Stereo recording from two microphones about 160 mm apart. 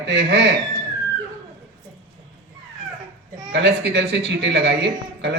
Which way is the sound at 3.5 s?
90° right.